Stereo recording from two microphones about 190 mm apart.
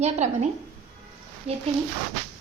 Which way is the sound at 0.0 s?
35° right (ahead or behind).